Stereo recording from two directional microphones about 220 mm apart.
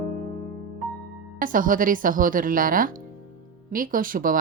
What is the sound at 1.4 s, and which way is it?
Speech, 40° right (ahead or behind).